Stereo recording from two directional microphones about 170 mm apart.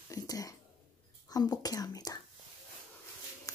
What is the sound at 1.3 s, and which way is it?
Speech, 20° left (ahead or behind).